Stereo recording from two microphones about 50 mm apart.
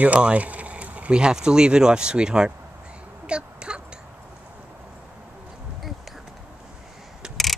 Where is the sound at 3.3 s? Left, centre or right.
Right.